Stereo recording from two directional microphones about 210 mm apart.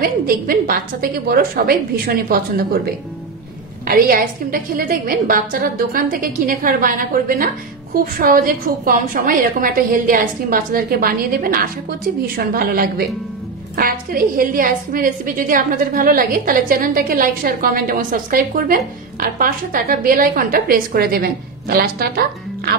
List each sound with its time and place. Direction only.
0.0 s a woman's voice: 45° right (ahead or behind)